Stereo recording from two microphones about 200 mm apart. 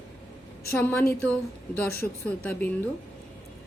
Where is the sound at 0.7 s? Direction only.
10° left (ahead or behind).